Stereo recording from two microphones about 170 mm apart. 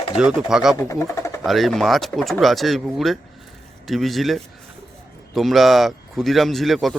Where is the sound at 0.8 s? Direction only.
15° left (ahead or behind).